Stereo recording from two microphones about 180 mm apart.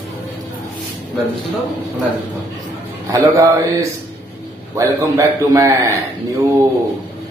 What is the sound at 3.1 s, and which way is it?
Speech, 15° right (ahead or behind).